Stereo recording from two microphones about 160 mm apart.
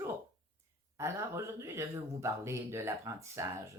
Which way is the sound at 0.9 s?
15° right (ahead or behind).